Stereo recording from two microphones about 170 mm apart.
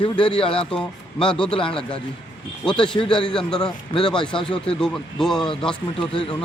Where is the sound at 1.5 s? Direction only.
30° left (ahead or behind).